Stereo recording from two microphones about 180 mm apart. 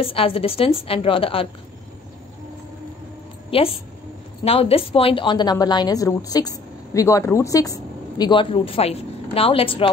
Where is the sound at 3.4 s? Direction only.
30° left (ahead or behind).